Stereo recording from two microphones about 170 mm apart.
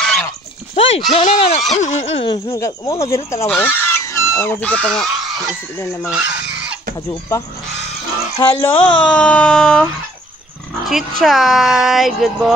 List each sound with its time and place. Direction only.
0.0 s a sound: 5° left (ahead or behind)
0.7 s speech: 35° left (ahead or behind); by 5.1 s 5° left (ahead or behind)
6.0 s speech: 5° right (ahead or behind)
8.5 s speech: 5° left (ahead or behind)
10.9 s speech: centre (ahead or behind)